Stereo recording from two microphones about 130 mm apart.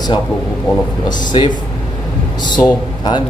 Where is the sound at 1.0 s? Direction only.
35° left (ahead or behind).